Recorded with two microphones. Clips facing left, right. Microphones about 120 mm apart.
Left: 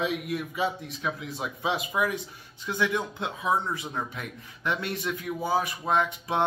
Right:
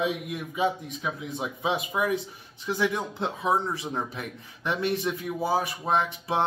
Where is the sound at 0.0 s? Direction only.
15° right (ahead or behind).